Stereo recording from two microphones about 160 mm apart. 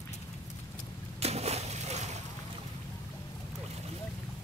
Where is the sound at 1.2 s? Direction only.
40° right (ahead or behind).